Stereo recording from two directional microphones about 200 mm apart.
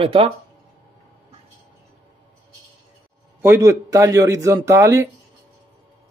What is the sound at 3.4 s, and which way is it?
Speech, 15° right (ahead or behind).